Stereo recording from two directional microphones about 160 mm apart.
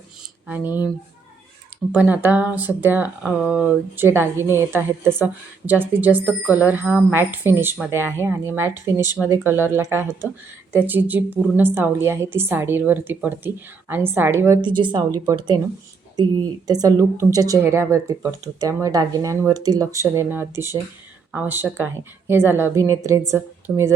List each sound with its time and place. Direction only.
1.9 s a woman's voice: 10° right (ahead or behind)
14.6 s a woman's voice: 30° right (ahead or behind)